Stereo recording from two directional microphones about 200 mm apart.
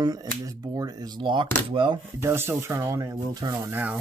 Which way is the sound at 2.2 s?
10° right (ahead or behind).